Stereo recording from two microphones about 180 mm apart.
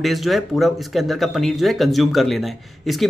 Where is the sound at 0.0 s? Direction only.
Centre (ahead or behind).